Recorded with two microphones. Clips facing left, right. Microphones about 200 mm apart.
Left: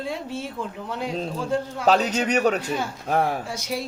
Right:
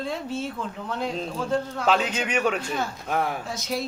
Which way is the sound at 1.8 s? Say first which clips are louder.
Left 5 dB; 40° left (ahead or behind).